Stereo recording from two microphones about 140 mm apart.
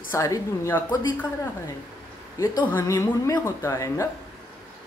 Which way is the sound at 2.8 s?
25° left (ahead or behind).